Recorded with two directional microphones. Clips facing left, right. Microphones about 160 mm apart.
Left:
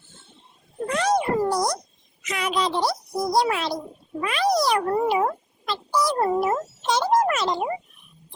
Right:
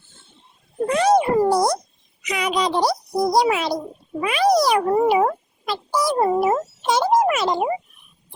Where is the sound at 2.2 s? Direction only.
Centre (ahead or behind).